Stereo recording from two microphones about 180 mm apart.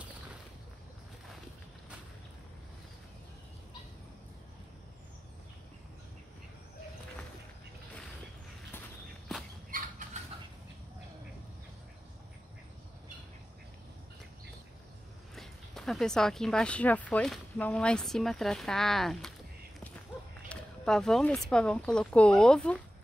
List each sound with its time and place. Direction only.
9.7 s bird flight: 50° right (ahead or behind)
15.3 s speech: centre (ahead or behind)
20.4 s speech: 5° left (ahead or behind)